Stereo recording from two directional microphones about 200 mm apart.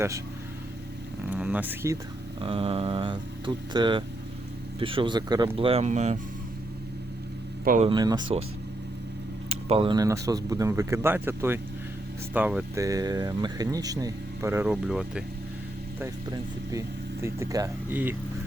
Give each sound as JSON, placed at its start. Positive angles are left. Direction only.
{"t": 1.3, "sound": "speech", "side_deg": -5}
{"t": 2.4, "sound": "speech", "side_deg": -25}
{"t": 7.6, "sound": "speech", "side_deg": -45}
{"t": 7.9, "sound": "speech", "side_deg": -20}
{"t": 9.5, "sound": "speech", "side_deg": -30}
{"t": 16.0, "sound": "speech", "side_deg": -15}